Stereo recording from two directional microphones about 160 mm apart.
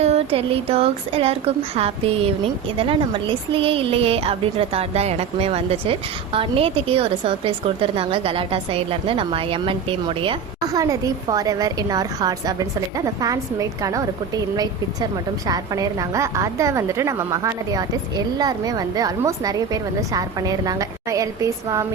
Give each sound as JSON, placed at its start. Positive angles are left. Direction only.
{"t": 0.0, "sound": "speech", "side_deg": -40}
{"t": 10.6, "sound": "a woman's voice", "side_deg": -20}
{"t": 15.4, "sound": "a woman's voice", "side_deg": -25}